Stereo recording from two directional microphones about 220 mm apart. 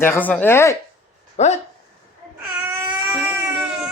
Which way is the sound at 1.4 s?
30° left (ahead or behind).